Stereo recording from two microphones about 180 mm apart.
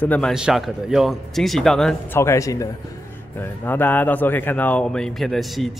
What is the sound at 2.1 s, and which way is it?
Speech, 15° left (ahead or behind).